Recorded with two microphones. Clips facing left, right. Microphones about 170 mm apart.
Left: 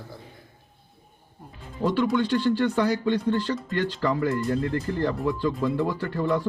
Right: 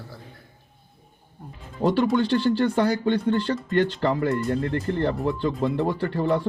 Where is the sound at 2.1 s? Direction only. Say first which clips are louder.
Right 2 dB; 35° right (ahead or behind).